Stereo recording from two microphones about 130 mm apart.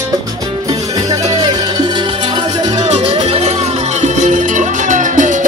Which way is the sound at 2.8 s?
55° right (ahead or behind).